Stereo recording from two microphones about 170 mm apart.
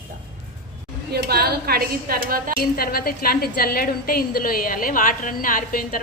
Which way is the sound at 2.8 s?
60° left (ahead or behind).